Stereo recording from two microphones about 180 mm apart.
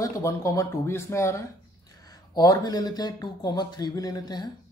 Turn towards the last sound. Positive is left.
turn(degrees=20)  # may be behind; listen again after turning